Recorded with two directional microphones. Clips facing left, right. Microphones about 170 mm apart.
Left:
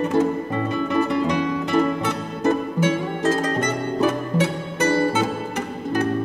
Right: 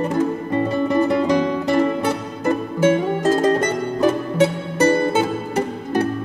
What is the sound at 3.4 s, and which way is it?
Music, 35° right (ahead or behind).